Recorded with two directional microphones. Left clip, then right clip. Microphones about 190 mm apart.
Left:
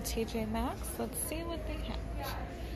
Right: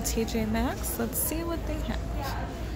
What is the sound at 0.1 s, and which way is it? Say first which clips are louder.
Speech: right 5 dB; 15° right (ahead or behind).